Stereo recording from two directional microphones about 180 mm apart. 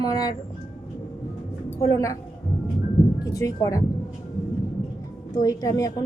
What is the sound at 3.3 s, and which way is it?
Speech, 20° left (ahead or behind).